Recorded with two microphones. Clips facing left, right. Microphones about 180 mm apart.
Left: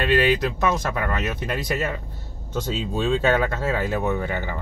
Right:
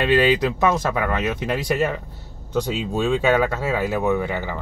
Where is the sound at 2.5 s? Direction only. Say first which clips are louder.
Right 3 dB; 10° right (ahead or behind).